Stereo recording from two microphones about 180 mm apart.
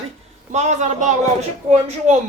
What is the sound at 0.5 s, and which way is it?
Speech, 40° right (ahead or behind).